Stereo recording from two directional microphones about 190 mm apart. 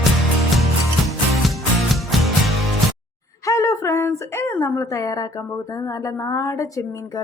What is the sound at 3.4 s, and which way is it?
A woman's voice, 15° left (ahead or behind).